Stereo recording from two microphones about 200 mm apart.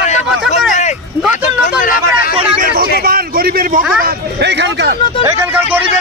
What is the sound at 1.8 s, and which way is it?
Speech, 45° left (ahead or behind).